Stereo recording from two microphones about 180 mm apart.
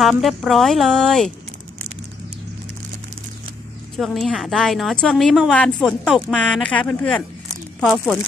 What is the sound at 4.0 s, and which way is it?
A woman's voice, centre (ahead or behind).